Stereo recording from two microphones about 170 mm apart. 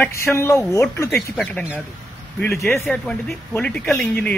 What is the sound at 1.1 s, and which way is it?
Speech, centre (ahead or behind).